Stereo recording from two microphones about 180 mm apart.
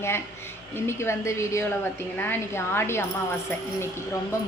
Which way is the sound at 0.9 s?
15° left (ahead or behind).